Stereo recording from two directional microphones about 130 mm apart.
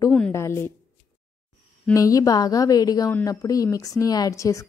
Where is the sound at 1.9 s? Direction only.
25° left (ahead or behind).